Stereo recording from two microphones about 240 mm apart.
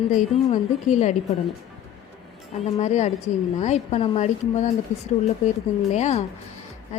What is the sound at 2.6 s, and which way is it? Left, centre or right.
A woman's voice, left.